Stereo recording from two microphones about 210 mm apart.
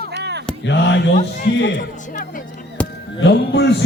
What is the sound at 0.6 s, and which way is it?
A man's voice, 60° left (ahead or behind).